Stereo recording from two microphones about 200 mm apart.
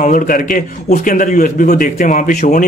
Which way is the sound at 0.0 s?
45° left (ahead or behind).